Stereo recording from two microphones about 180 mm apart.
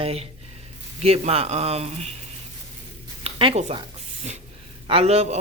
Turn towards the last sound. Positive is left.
turn(degrees=-35)  # may be behind; listen again after turning